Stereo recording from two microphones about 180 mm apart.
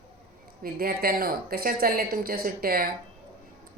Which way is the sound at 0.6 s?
55° right (ahead or behind).